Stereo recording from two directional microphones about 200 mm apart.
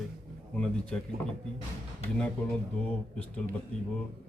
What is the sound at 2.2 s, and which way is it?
A man's voice, 5° left (ahead or behind).